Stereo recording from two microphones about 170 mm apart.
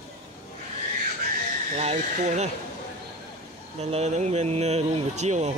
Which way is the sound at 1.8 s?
40° right (ahead or behind).